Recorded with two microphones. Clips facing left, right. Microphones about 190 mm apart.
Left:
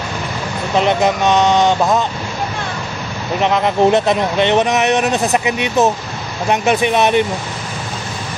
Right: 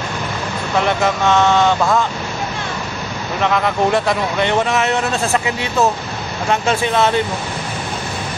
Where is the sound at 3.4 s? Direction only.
20° left (ahead or behind).